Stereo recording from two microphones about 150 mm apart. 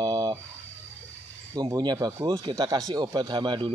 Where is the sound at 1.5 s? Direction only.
25° right (ahead or behind).